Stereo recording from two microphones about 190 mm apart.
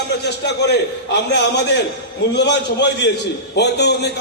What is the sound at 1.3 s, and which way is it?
A man's voice, 60° left (ahead or behind).